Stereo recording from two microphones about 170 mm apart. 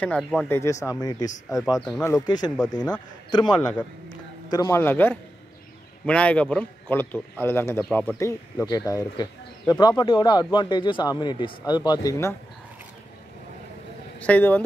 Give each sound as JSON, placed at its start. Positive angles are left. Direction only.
{"t": 0.0, "sound": "speech", "side_deg": 5}
{"t": 0.5, "sound": "a man's voice", "side_deg": 15}
{"t": 14.2, "sound": "a man's voice", "side_deg": 10}